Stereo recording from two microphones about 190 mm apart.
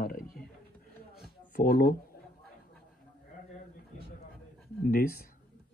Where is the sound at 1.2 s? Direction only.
55° left (ahead or behind).